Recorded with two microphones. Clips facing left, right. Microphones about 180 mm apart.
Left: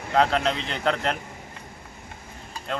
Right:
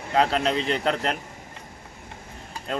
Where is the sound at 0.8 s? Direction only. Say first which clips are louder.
Even; 35° right (ahead or behind).